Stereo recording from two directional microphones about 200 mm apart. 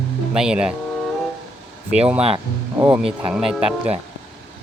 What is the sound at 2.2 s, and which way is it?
Speech, 30° right (ahead or behind).